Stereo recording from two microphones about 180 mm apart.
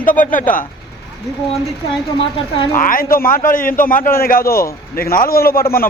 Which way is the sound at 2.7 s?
50° left (ahead or behind).